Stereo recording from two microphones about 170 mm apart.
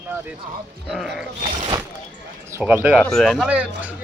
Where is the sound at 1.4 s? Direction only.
30° right (ahead or behind).